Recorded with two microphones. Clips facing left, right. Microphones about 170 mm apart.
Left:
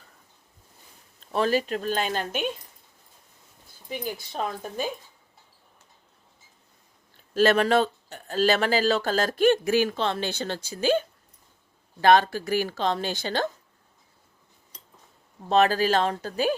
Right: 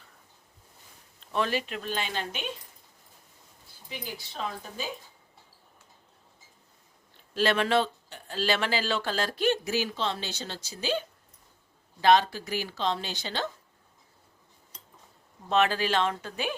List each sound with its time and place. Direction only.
1.2 s speech: 40° left (ahead or behind)
3.8 s speech: 50° left (ahead or behind)
7.3 s speech: 45° left (ahead or behind)
15.4 s speech: 40° left (ahead or behind)